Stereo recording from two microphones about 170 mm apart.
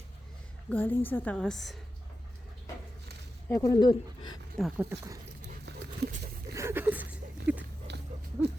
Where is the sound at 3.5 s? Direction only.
20° left (ahead or behind).